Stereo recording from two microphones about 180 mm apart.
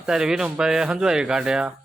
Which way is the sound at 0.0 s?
5° right (ahead or behind).